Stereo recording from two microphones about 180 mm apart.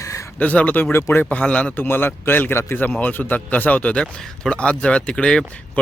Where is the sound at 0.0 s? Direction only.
20° left (ahead or behind).